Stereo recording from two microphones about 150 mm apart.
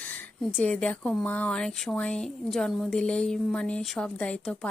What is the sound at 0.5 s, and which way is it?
Speech, 5° left (ahead or behind).